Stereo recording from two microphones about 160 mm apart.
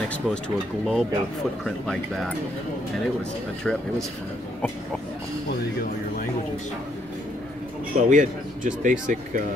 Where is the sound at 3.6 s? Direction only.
5° left (ahead or behind).